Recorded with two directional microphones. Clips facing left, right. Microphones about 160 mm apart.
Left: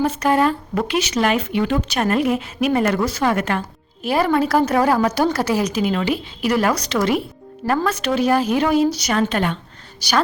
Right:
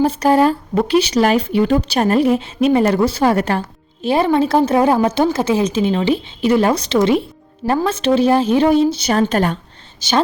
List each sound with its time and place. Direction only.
0.0 s a woman's voice: 35° right (ahead or behind)
10.0 s a woman's voice: 20° right (ahead or behind)